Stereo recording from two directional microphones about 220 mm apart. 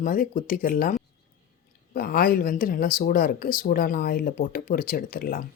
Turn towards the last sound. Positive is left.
turn(degrees=40)  # may be behind; listen again after turning